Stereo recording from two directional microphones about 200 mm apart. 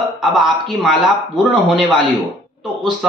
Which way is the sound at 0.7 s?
Centre (ahead or behind).